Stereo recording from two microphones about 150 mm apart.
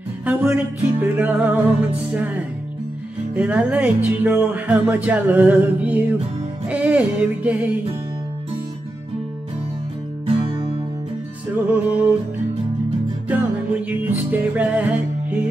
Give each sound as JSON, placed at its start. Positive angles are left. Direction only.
{"t": 0.2, "sound": "music", "side_deg": -10}
{"t": 10.2, "sound": "music", "side_deg": -35}
{"t": 11.7, "sound": "music", "side_deg": -10}
{"t": 13.3, "sound": "music", "side_deg": -10}